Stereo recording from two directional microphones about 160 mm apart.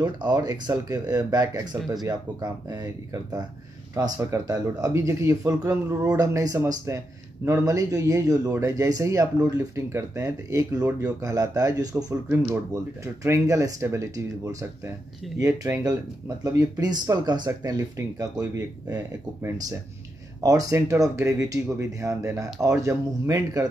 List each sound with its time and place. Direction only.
0.0 s speech: 25° right (ahead or behind)